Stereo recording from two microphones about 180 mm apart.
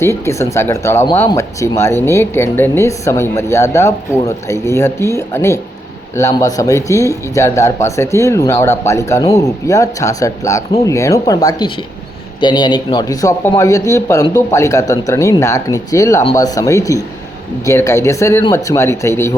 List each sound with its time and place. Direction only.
0.0 s speech: 15° left (ahead or behind)